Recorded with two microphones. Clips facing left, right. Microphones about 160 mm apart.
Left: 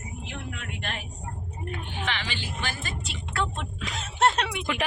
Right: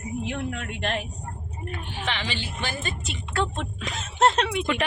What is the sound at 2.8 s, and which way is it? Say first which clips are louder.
Speech: right 3 dB; 25° right (ahead or behind).